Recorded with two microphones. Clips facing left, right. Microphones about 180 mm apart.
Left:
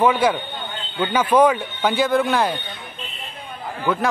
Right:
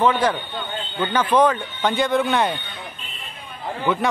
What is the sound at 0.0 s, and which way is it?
Speech, 10° left (ahead or behind).